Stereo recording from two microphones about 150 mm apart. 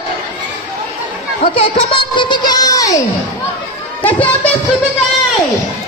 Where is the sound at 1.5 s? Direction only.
35° left (ahead or behind).